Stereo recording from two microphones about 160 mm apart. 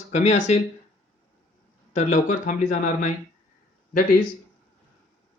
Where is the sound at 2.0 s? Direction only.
45° left (ahead or behind).